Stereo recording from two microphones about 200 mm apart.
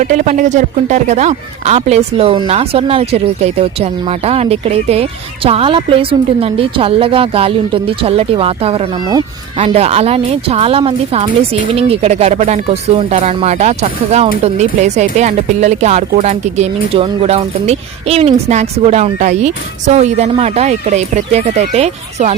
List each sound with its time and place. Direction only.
0.1 s speech: 35° right (ahead or behind)